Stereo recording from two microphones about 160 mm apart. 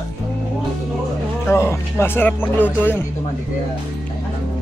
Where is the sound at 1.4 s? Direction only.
15° left (ahead or behind).